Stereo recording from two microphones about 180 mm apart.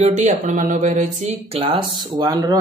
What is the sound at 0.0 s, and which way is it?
Speech, 40° right (ahead or behind).